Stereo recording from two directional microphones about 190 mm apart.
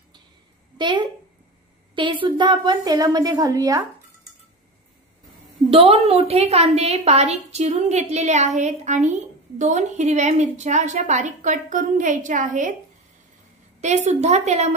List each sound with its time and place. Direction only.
0.7 s a woman's voice: 25° right (ahead or behind)
5.7 s a woman's voice: 30° right (ahead or behind)
13.7 s a woman's voice: 35° right (ahead or behind)